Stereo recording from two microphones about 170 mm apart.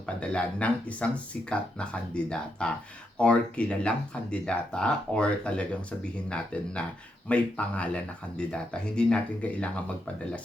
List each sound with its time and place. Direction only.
0.2 s speech: 5° left (ahead or behind)